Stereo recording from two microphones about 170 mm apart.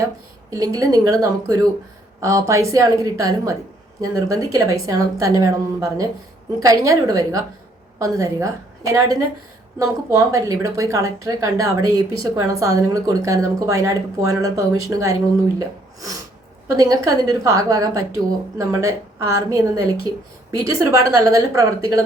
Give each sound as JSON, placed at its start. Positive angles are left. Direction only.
{"t": 0.5, "sound": "a woman's voice", "side_deg": -20}